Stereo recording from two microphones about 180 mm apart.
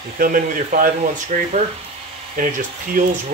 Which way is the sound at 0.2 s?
50° right (ahead or behind).